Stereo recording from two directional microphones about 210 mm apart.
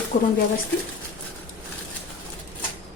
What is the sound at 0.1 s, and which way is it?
Speech, 35° left (ahead or behind).